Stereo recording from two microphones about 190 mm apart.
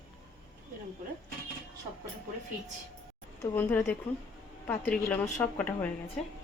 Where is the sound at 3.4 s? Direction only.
10° left (ahead or behind).